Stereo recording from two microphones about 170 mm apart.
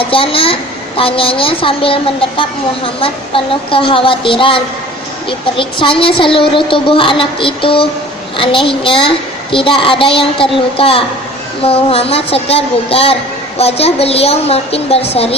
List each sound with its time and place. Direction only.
0.0 s a woman's voice: 30° left (ahead or behind)